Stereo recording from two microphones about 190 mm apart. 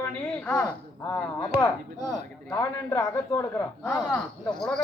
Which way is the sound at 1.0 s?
20° left (ahead or behind).